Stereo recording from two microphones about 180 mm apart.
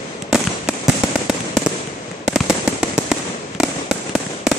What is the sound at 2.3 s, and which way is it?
Fireworks, centre (ahead or behind).